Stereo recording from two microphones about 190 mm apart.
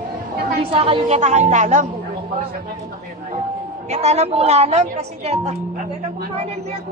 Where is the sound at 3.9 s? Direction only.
35° right (ahead or behind).